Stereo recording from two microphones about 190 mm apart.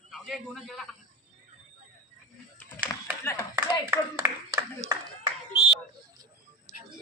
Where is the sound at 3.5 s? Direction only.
10° right (ahead or behind).